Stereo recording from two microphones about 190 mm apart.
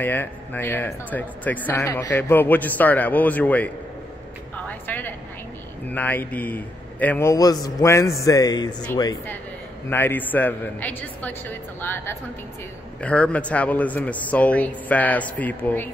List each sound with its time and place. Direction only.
0.0 s speech: 10° left (ahead or behind)
4.6 s a sound: 10° left (ahead or behind)
5.9 s speech: 10° left (ahead or behind)